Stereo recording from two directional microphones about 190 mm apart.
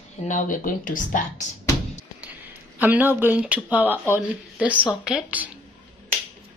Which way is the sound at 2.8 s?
10° right (ahead or behind).